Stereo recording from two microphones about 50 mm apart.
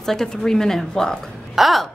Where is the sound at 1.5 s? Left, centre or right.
Centre.